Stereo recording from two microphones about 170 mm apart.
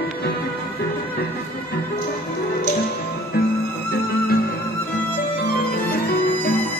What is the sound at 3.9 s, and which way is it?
Music, 65° left (ahead or behind).